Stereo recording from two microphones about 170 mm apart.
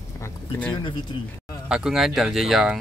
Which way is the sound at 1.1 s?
25° left (ahead or behind).